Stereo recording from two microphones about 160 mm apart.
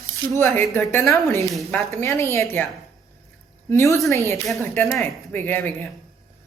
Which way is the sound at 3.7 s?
20° left (ahead or behind).